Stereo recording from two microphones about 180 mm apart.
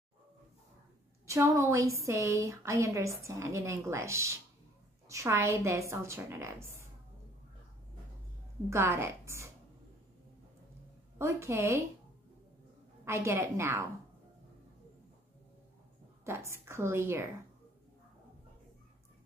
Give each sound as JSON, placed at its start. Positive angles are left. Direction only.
{"t": 1.2, "sound": "a woman's voice", "side_deg": -15}
{"t": 8.6, "sound": "a woman's voice", "side_deg": -15}
{"t": 11.1, "sound": "a woman's voice", "side_deg": -15}
{"t": 13.0, "sound": "a woman's voice", "side_deg": -15}
{"t": 16.3, "sound": "a woman's voice", "side_deg": -15}